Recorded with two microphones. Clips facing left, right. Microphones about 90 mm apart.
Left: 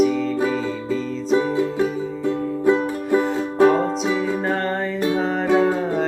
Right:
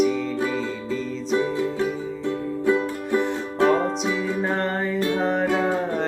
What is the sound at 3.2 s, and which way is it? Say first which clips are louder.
Music: left 5 dB; 5° left (ahead or behind).